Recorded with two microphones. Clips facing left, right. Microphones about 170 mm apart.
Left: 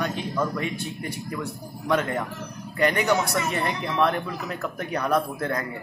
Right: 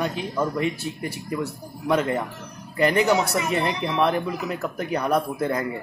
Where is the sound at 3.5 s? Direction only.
20° right (ahead or behind).